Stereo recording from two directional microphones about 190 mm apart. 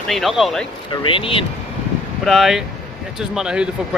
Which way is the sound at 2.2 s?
Centre (ahead or behind).